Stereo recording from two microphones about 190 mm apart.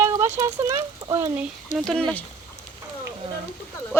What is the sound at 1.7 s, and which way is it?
Speech, centre (ahead or behind).